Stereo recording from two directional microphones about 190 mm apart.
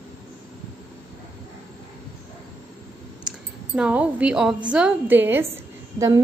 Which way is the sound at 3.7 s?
5° right (ahead or behind).